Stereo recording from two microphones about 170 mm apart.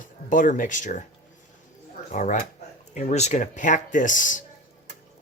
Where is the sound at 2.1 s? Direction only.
45° left (ahead or behind).